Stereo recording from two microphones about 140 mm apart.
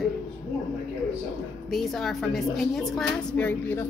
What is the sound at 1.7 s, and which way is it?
A woman's voice, centre (ahead or behind).